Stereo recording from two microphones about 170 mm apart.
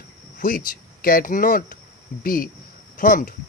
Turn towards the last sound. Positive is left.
turn(degrees=55)  # may be behind; listen again after turning